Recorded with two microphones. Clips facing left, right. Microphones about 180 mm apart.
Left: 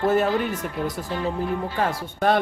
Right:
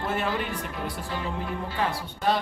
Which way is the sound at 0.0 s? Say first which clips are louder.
Left 8 dB; 40° left (ahead or behind).